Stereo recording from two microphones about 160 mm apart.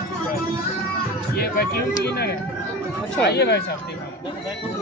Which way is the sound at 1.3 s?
75° left (ahead or behind).